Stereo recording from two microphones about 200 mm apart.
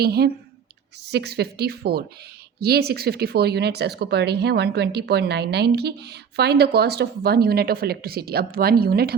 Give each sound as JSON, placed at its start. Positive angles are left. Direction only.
{"t": 0.0, "sound": "speech", "side_deg": -55}